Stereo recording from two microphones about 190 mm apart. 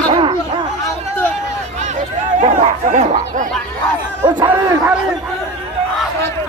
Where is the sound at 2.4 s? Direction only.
40° right (ahead or behind).